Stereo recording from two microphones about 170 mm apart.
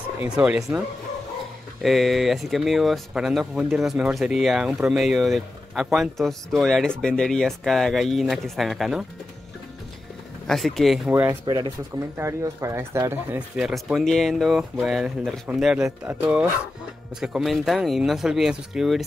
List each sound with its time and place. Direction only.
0.2 s speech: 5° right (ahead or behind)
1.8 s speech: centre (ahead or behind)
10.4 s speech: centre (ahead or behind)
11.1 s speech: 10° right (ahead or behind)
11.4 s speech: 25° right (ahead or behind)
12.2 s speech: 15° right (ahead or behind)